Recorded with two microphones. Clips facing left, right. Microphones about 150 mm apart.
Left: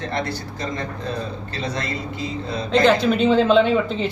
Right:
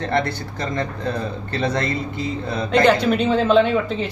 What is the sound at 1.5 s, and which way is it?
Speech, 60° right (ahead or behind).